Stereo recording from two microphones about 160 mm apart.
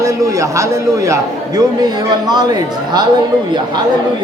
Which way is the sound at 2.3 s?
25° right (ahead or behind).